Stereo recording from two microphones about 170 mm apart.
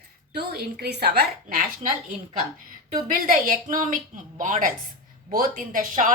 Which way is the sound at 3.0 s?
50° right (ahead or behind).